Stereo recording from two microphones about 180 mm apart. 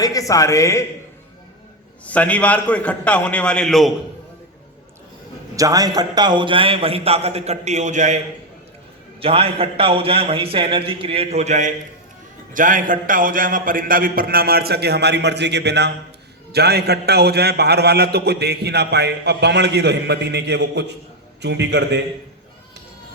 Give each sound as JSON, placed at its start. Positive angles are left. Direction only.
{"t": 0.0, "sound": "a man's voice", "side_deg": 20}
{"t": 2.0, "sound": "a man's voice", "side_deg": 5}
{"t": 5.5, "sound": "a man's voice", "side_deg": -20}
{"t": 9.2, "sound": "a man's voice", "side_deg": -30}